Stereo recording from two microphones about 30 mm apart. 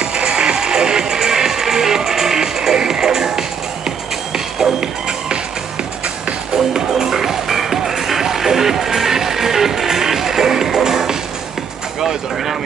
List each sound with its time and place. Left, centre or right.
0.0 s music: right
6.9 s music: centre
12.0 s vehicle: centre